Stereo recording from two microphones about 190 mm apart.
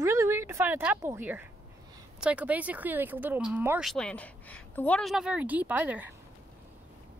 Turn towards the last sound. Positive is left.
turn(degrees=-10)  # may be behind; listen again after turning